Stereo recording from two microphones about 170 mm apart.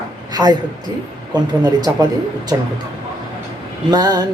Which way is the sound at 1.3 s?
25° right (ahead or behind).